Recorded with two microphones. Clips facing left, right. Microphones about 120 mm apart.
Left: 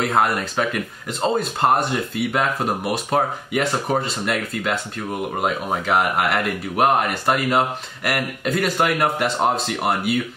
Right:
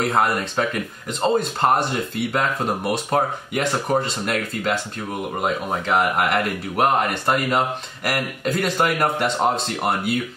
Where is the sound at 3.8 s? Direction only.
Centre (ahead or behind).